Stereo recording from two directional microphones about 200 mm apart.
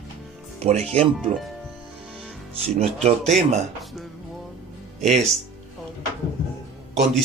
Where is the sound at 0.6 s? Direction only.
30° right (ahead or behind).